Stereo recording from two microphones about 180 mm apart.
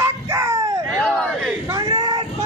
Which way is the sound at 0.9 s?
5° left (ahead or behind).